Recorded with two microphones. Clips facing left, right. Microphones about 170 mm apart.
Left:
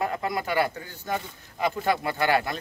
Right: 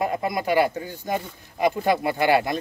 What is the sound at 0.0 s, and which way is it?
A man's voice, 15° right (ahead or behind).